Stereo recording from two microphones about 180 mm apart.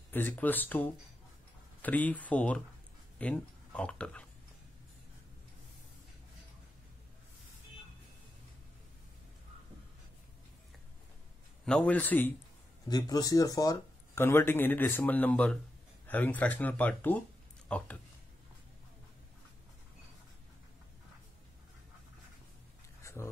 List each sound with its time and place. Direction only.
0.1 s speech: 10° left (ahead or behind)
11.6 s speech: 5° left (ahead or behind)
12.8 s speech: 20° left (ahead or behind)
23.0 s a sound: 15° left (ahead or behind)